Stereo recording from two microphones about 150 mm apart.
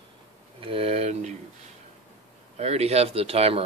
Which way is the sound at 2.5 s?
45° right (ahead or behind).